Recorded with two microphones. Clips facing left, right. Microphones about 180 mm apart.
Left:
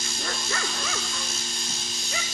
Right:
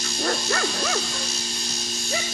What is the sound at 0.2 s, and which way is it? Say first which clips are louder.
Bow-wow: right 8 dB; 50° right (ahead or behind).